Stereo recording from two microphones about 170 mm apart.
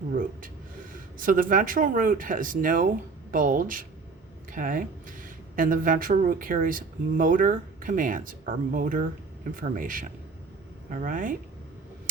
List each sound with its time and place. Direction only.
0.1 s speech: 55° right (ahead or behind)